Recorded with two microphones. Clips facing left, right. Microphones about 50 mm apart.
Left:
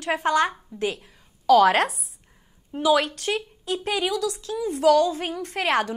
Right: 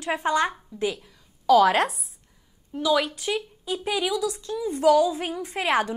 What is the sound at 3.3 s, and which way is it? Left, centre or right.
Speech, centre.